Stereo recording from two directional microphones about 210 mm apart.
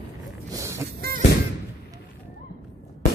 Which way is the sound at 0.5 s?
15° right (ahead or behind).